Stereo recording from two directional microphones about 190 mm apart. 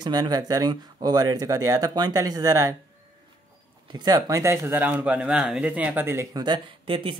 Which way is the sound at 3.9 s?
20° right (ahead or behind).